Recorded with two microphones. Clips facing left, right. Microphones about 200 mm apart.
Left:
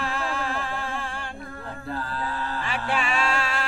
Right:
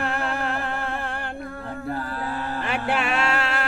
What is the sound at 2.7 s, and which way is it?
Music, 60° right (ahead or behind).